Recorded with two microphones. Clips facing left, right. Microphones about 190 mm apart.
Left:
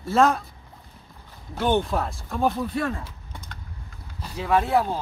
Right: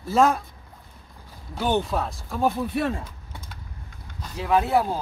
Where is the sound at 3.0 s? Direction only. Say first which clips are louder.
Even; 5° right (ahead or behind).